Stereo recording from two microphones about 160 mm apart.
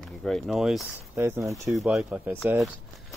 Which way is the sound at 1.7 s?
Centre (ahead or behind).